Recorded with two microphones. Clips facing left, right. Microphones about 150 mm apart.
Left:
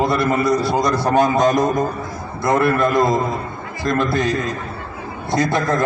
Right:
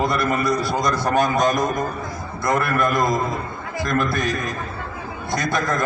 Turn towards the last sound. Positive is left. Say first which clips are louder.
# left 4 dB
turn(degrees=25)  # may be behind; listen again after turning